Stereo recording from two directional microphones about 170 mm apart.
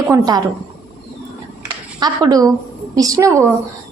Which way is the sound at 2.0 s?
25° right (ahead or behind).